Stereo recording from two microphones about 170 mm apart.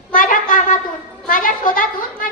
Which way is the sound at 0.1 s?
50° left (ahead or behind).